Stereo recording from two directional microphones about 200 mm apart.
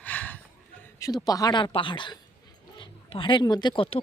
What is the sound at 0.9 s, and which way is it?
Speech, 20° left (ahead or behind).